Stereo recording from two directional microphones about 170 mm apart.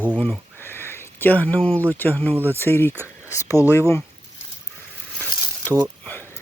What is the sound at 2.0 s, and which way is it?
Speech, 10° left (ahead or behind).